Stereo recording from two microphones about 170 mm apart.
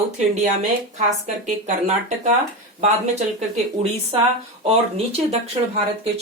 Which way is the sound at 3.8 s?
35° right (ahead or behind).